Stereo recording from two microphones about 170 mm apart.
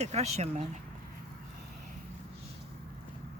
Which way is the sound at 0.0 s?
40° right (ahead or behind).